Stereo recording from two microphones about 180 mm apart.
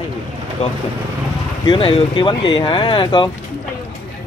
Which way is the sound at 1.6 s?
30° left (ahead or behind).